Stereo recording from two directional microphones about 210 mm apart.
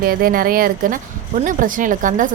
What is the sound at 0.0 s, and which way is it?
Speech, 45° right (ahead or behind).